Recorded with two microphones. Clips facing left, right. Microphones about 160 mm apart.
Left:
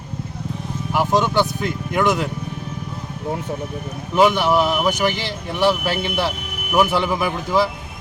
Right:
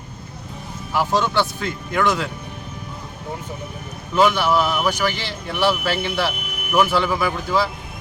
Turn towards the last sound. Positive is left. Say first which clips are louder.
# left 2 dB
turn(degrees=15)  # may be behind; listen again after turning